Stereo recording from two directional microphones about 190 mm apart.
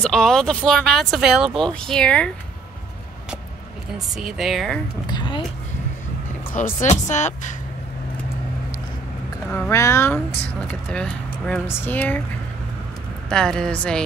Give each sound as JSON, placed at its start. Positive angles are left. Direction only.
{"t": 0.0, "sound": "speech", "side_deg": 5}
{"t": 4.2, "sound": "speech", "side_deg": 0}
{"t": 5.0, "sound": "a woman's voice", "side_deg": 25}
{"t": 6.5, "sound": "speech", "side_deg": 40}
{"t": 9.5, "sound": "speech", "side_deg": 15}
{"t": 13.3, "sound": "speech", "side_deg": 5}